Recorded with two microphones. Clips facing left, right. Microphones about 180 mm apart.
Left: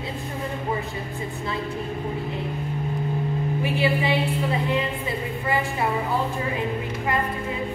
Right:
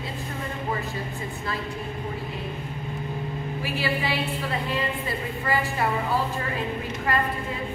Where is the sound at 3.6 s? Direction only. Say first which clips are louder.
Left 4 dB; 20° left (ahead or behind).